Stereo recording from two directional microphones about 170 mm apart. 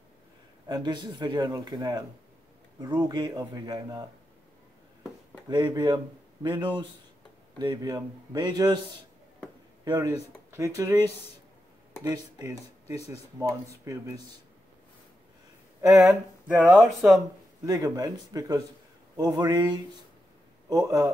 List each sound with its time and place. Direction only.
0.7 s speech: 25° right (ahead or behind)
5.5 s speech: 25° right (ahead or behind)
9.8 s speech: 20° right (ahead or behind)
12.0 s speech: 20° right (ahead or behind)
16.0 s speech: 5° right (ahead or behind)
17.6 s speech: 25° right (ahead or behind)